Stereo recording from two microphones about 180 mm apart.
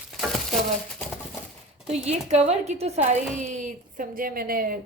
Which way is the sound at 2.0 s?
35° right (ahead or behind).